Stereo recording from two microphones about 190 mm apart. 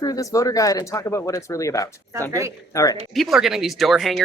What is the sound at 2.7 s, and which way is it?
Speech, 15° left (ahead or behind).